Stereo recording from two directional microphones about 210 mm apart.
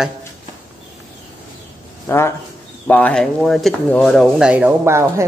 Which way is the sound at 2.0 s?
10° left (ahead or behind).